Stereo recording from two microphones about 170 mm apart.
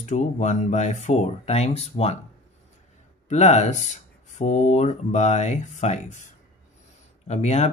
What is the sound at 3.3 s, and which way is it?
Speech, 40° left (ahead or behind).